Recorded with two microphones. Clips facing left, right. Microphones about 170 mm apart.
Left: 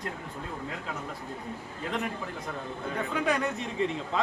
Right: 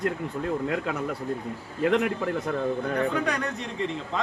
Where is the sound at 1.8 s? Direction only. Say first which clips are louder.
Right 10 dB; 70° right (ahead or behind).